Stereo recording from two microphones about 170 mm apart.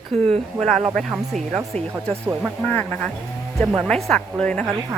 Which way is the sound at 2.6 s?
10° left (ahead or behind).